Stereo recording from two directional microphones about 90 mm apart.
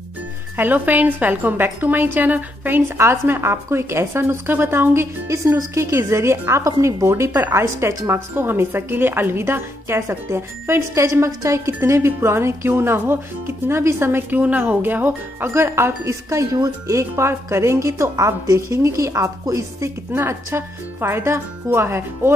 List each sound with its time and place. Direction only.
0.6 s a woman's voice: 20° right (ahead or behind)
5.3 s a woman's voice: 35° right (ahead or behind)